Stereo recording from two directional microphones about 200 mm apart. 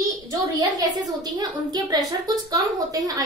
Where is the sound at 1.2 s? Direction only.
20° right (ahead or behind).